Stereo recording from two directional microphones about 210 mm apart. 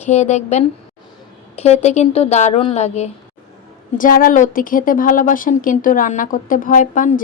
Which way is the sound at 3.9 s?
40° left (ahead or behind).